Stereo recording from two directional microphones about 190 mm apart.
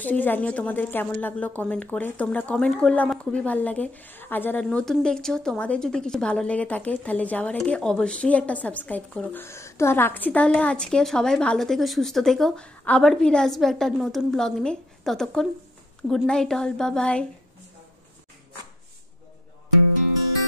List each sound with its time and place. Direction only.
0.0 s a woman's voice: 10° left (ahead or behind)